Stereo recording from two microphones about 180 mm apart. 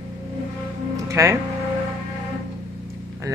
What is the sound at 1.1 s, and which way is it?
Speech, 15° right (ahead or behind).